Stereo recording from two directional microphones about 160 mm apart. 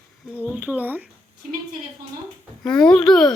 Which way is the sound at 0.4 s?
10° right (ahead or behind).